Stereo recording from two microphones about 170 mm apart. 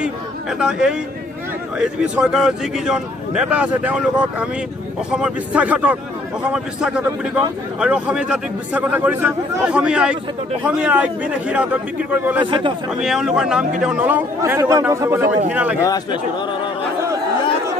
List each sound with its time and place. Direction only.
0.0 s a man's voice: 5° right (ahead or behind)
12.4 s a man's voice: 30° right (ahead or behind)
13.0 s a man's voice: 5° right (ahead or behind)
15.8 s a man's voice: 25° left (ahead or behind)